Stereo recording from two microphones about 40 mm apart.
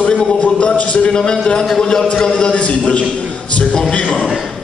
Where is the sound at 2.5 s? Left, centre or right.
Left.